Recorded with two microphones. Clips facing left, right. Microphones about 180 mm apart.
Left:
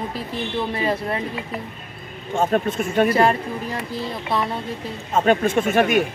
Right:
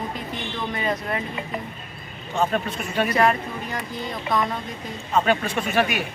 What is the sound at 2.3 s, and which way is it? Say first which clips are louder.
Speech: left 4 dB; 45° left (ahead or behind).